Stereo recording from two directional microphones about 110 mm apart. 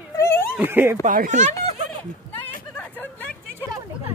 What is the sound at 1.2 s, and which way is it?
Speech, 90° right.